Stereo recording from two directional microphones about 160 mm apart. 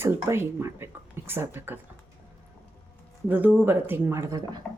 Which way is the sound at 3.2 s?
10° right (ahead or behind).